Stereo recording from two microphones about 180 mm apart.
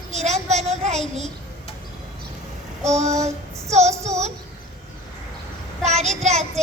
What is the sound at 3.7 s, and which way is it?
Speech, 40° right (ahead or behind).